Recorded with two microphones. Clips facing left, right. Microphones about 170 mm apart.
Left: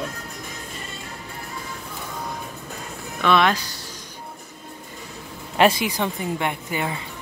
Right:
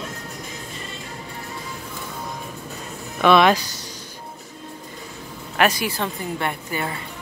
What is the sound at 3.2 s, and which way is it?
Speech, 10° right (ahead or behind).